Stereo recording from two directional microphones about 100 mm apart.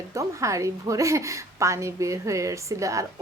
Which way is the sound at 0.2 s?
30° right (ahead or behind).